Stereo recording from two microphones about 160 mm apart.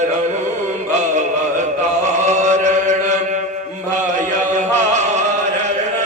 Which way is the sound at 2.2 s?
45° right (ahead or behind).